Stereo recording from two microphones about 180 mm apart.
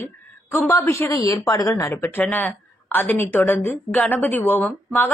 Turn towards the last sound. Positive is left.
turn(degrees=10)  # may be behind; listen again after turning